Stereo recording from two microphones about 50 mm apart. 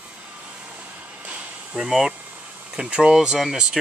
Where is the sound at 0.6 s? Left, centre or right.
Right.